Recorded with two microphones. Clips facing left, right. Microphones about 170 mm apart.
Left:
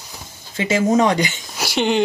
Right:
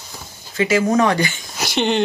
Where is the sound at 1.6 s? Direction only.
5° left (ahead or behind).